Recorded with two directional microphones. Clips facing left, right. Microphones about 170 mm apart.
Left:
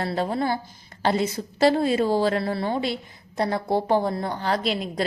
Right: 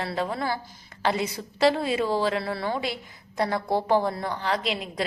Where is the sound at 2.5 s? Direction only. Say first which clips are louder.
Left 3 dB; 25° left (ahead or behind).